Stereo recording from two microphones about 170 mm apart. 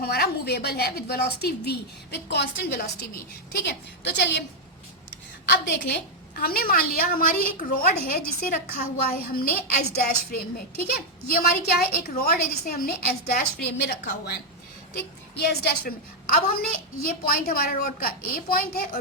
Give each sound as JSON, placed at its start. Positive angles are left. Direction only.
{"t": 0.0, "sound": "a woman's voice", "side_deg": 70}
{"t": 3.7, "sound": "a woman's voice", "side_deg": 90}
{"t": 5.5, "sound": "a woman's voice", "side_deg": 85}
{"t": 13.8, "sound": "a woman's voice", "side_deg": 85}
{"t": 14.9, "sound": "a woman's voice", "side_deg": 70}